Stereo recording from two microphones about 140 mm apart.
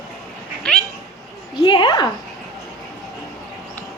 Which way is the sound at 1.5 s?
35° left (ahead or behind).